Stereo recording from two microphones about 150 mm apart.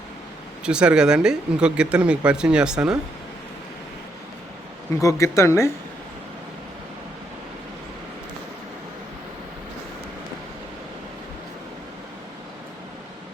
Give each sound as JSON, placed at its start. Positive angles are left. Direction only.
{"t": 0.6, "sound": "speech", "side_deg": -5}
{"t": 4.9, "sound": "speech", "side_deg": 20}